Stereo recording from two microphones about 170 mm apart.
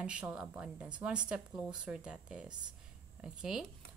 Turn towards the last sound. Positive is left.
turn(degrees=-5)  # may be behind; listen again after turning